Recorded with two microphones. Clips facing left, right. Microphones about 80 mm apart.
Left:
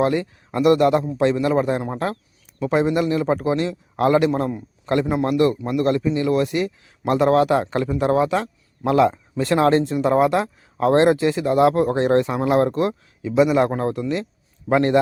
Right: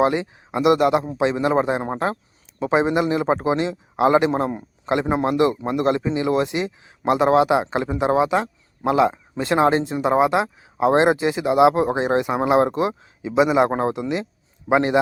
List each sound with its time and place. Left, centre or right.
0.0 s speech: centre